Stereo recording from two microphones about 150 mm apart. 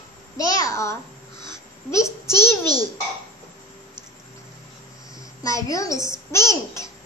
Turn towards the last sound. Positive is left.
turn(degrees=20)  # may be behind; listen again after turning